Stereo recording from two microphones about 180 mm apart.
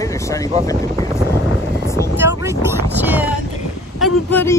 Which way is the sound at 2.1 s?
15° right (ahead or behind).